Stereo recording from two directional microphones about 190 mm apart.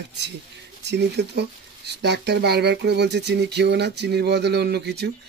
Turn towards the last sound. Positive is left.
turn(degrees=-60)  # may be behind; listen again after turning